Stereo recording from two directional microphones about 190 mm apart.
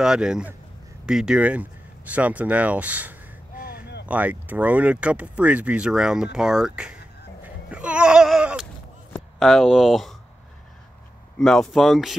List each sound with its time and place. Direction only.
0.0 s speech: 5° right (ahead or behind)
3.5 s a sound: 50° left (ahead or behind)
4.0 s speech: 10° right (ahead or behind)
7.4 s a sound: 5° right (ahead or behind)
9.1 s speech: centre (ahead or behind)
11.3 s speech: centre (ahead or behind)